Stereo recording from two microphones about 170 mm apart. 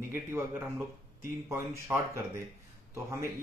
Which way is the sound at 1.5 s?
15° right (ahead or behind).